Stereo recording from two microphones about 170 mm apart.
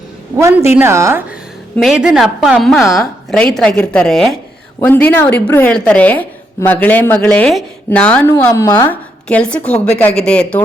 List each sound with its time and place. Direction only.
0.3 s a woman's voice: 15° right (ahead or behind)
1.7 s a woman's voice: centre (ahead or behind); by 8.9 s 20° left (ahead or behind)
8.9 s a woman's voice: 5° left (ahead or behind)